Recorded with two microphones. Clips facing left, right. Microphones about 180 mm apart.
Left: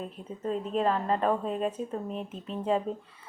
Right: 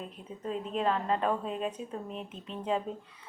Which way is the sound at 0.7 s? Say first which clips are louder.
Left 2 dB; centre (ahead or behind).